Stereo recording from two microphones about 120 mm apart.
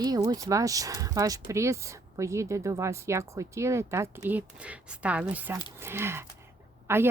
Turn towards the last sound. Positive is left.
turn(degrees=-20)  # may be behind; listen again after turning